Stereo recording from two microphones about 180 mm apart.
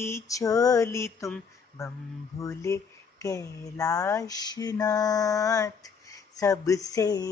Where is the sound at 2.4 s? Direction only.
15° left (ahead or behind).